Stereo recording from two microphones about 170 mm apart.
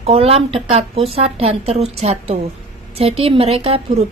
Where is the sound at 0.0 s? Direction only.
35° right (ahead or behind).